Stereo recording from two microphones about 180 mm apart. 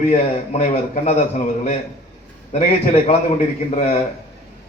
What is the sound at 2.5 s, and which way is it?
A man's voice, 40° left (ahead or behind).